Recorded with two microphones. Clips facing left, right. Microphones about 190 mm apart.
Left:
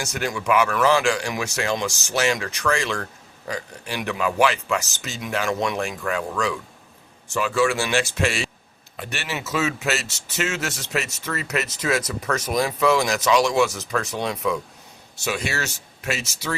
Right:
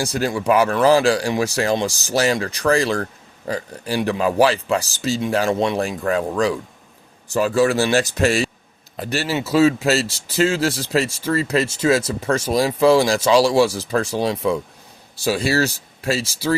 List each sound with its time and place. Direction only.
0.0 s speech: 35° right (ahead or behind)